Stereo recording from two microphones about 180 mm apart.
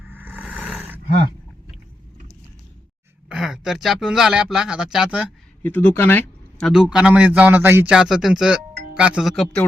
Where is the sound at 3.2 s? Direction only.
5° right (ahead or behind).